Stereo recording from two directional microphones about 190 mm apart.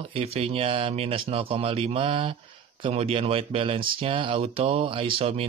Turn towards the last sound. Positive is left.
turn(degrees=-30)  # may be behind; listen again after turning